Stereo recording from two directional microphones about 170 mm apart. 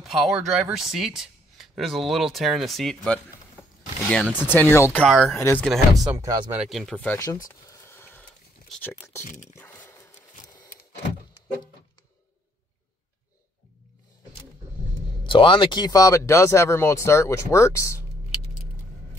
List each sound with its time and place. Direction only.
0.0 s speech: centre (ahead or behind)
4.4 s speech: 10° left (ahead or behind)
5.7 s speech: centre (ahead or behind)
6.1 s speech: 20° right (ahead or behind)
6.5 s speech: 5° right (ahead or behind)
7.6 s a sound: 15° left (ahead or behind)
9.2 s speech: 50° left (ahead or behind)
9.6 s a sound: 15° left (ahead or behind)
15.2 s speech: 30° left (ahead or behind)